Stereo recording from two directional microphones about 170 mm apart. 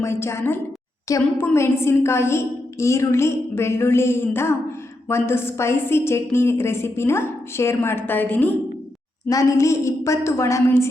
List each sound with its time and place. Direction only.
0.0 s a woman's voice: 15° left (ahead or behind)